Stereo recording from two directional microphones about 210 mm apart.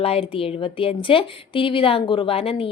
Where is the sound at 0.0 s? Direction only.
25° left (ahead or behind).